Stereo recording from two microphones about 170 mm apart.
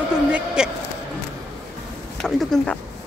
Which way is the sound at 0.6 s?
5° right (ahead or behind).